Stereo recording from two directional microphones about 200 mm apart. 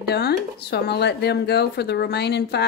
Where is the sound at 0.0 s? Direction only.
55° left (ahead or behind).